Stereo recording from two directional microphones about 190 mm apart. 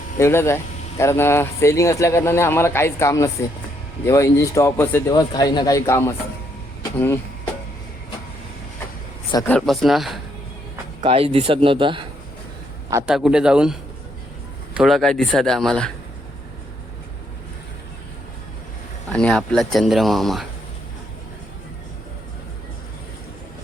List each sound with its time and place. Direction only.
0.2 s speech: 15° left (ahead or behind)
9.5 s speech: 5° left (ahead or behind)
11.0 s speech: 30° right (ahead or behind)
13.1 s speech: 5° right (ahead or behind)
14.8 s speech: centre (ahead or behind)
19.1 s speech: 5° left (ahead or behind)